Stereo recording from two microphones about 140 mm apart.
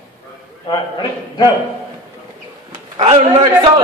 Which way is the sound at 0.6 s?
30° left (ahead or behind).